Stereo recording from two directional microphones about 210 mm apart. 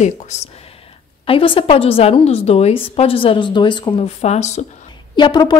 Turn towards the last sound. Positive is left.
turn(degrees=20)  # may be behind; listen again after turning